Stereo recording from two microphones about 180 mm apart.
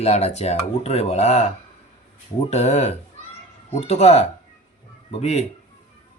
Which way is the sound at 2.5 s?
35° left (ahead or behind).